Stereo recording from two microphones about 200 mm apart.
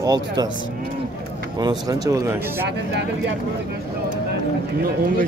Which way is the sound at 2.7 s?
60° right (ahead or behind).